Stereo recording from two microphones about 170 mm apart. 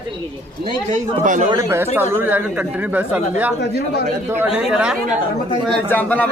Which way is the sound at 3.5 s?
80° left.